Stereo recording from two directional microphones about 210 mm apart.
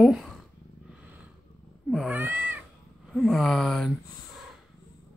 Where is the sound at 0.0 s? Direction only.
Centre (ahead or behind).